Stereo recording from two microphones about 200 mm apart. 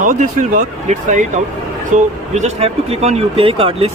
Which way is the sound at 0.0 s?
40° right (ahead or behind).